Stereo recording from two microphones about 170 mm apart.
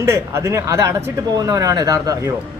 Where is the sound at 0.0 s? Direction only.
15° right (ahead or behind).